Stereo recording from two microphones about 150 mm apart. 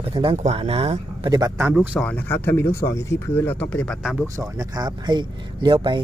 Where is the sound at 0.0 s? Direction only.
35° right (ahead or behind).